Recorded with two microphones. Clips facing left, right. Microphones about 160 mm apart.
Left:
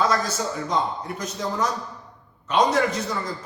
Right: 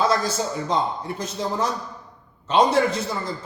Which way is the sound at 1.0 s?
30° right (ahead or behind).